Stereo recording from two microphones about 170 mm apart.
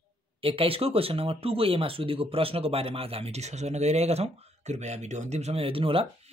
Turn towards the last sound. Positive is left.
turn(degrees=-35)  # may be behind; listen again after turning